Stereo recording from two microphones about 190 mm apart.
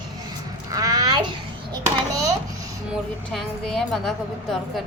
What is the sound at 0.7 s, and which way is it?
A child's voice, 20° right (ahead or behind).